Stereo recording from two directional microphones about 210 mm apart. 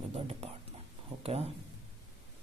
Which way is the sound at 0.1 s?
30° right (ahead or behind).